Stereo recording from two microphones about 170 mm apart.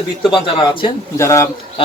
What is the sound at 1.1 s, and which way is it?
Speech, 15° left (ahead or behind).